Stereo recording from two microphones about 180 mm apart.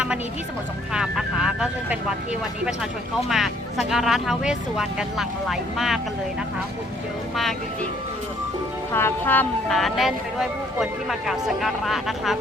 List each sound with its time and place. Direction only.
0.9 s speech: 5° right (ahead or behind)
3.2 s speech: centre (ahead or behind)
8.9 s speech: 15° left (ahead or behind)